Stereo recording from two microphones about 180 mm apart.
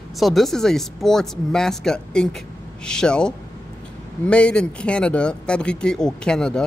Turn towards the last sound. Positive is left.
turn(degrees=5)  # may be behind; listen again after turning